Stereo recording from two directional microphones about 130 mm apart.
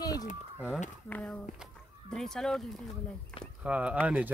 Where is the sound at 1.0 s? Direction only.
10° left (ahead or behind).